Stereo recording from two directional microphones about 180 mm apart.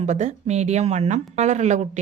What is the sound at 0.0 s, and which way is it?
A woman's voice, 40° right (ahead or behind).